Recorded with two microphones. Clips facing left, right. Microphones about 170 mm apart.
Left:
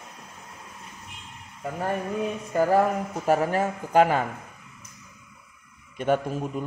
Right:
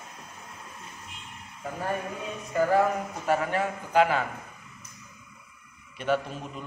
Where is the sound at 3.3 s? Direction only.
40° left (ahead or behind).